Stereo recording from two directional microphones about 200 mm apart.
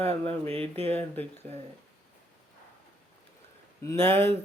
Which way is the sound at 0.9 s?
10° left (ahead or behind).